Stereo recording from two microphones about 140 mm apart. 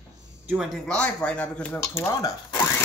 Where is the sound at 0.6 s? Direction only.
5° left (ahead or behind).